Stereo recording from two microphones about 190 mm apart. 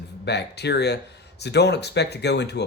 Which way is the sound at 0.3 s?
60° left (ahead or behind).